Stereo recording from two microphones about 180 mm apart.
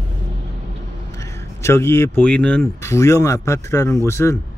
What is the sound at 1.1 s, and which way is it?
A man's voice, 15° left (ahead or behind).